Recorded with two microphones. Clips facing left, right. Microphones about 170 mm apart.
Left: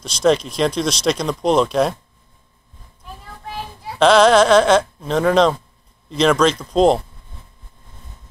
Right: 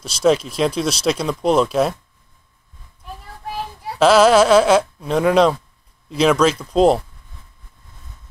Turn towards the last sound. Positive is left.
turn(degrees=-5)  # may be behind; listen again after turning